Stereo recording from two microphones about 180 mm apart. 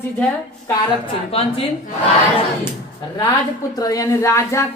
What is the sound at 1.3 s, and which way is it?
Speech, 30° left (ahead or behind).